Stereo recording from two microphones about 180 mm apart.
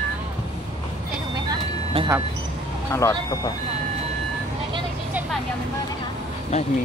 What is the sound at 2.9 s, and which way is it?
Speech, 15° left (ahead or behind).